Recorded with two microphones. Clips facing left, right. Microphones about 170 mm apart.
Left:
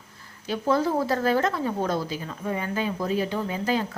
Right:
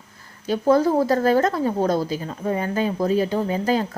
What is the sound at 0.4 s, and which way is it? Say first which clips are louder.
A woman's voice: right 6 dB; 45° right (ahead or behind).